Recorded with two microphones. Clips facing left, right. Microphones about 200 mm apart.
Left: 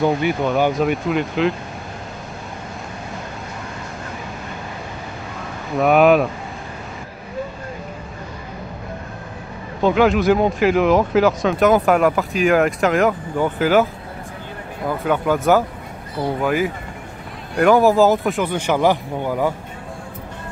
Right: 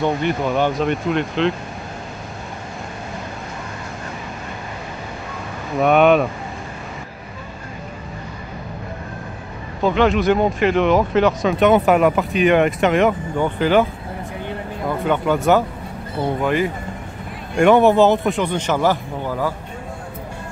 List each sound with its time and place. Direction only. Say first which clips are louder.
0.0 s speech: left 2 dB; centre (ahead or behind)
5.8 s speech: even; centre (ahead or behind)
9.8 s speech: left 1 dB; centre (ahead or behind)
14.9 s speech: even; 5° left (ahead or behind)